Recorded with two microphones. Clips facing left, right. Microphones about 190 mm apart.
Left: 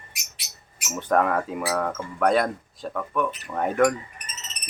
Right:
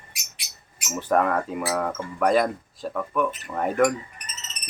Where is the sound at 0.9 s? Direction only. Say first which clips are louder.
Even; centre (ahead or behind).